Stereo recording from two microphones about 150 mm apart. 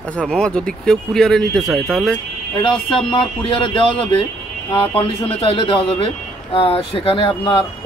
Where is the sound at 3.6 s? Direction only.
35° left (ahead or behind).